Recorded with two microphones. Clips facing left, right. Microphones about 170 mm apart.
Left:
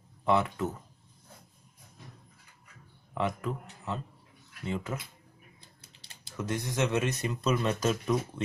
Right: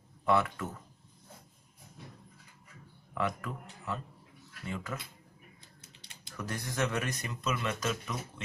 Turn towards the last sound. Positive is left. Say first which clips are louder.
# left 6 dB
turn(degrees=35)  # may be behind; listen again after turning